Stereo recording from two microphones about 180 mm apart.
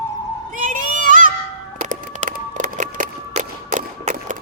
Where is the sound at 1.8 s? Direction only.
45° right (ahead or behind).